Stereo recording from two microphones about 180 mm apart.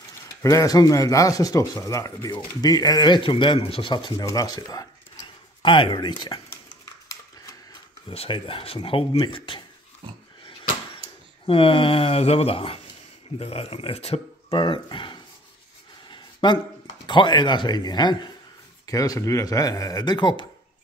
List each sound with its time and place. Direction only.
0.4 s speech: 15° left (ahead or behind)
8.1 s speech: 30° left (ahead or behind)
11.4 s speech: 30° left (ahead or behind)
16.1 s a sound: 25° left (ahead or behind)
17.0 s speech: 25° left (ahead or behind)